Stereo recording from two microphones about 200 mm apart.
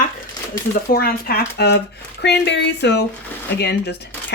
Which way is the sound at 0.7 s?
50° left (ahead or behind).